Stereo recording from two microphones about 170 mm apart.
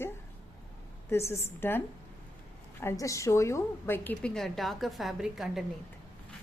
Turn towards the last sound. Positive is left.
turn(degrees=0)  # may be behind; listen again after turning